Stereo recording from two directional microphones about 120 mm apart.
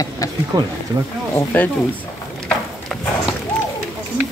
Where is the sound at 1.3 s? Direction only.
15° left (ahead or behind).